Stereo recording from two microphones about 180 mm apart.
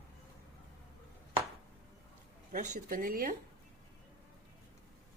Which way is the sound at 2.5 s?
50° right (ahead or behind).